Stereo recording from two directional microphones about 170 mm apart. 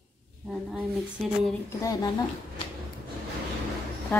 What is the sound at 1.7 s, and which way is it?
Speech, 20° left (ahead or behind).